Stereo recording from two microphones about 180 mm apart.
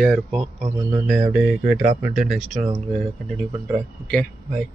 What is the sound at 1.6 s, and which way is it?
Speech, 45° right (ahead or behind).